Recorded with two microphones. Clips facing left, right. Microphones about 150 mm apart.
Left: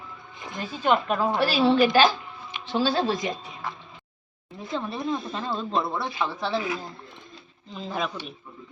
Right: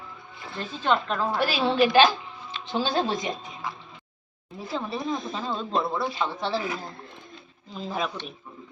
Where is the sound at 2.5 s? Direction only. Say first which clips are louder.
Right 1 dB; 15° left (ahead or behind).